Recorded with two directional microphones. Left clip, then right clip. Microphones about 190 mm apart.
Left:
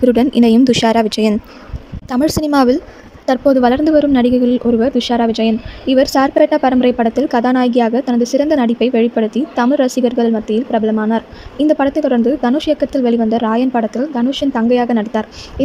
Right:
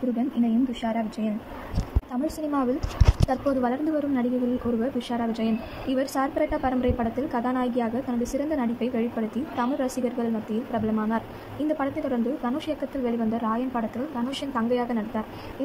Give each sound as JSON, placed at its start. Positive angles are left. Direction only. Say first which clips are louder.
{"t": 0.2, "sound": "speech", "louder": "left 14 dB", "side_deg": 65}
{"t": 2.0, "sound": "speech", "louder": "left 14 dB", "side_deg": 65}
{"t": 3.3, "sound": "a woman's voice", "louder": "left 14 dB", "side_deg": 50}